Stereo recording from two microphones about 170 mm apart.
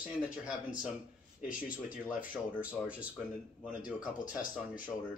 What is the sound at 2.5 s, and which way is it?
Speech, 10° right (ahead or behind).